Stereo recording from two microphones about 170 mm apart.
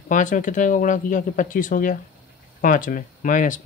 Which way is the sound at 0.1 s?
50° left (ahead or behind).